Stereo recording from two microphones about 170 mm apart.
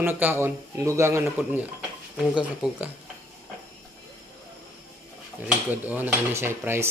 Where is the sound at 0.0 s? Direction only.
10° right (ahead or behind).